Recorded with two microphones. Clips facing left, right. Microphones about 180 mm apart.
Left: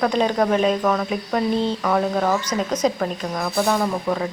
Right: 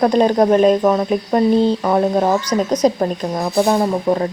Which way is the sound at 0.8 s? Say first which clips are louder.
Right 6 dB; 30° right (ahead or behind).